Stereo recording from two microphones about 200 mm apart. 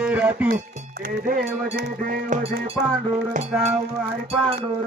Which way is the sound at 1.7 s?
45° right (ahead or behind).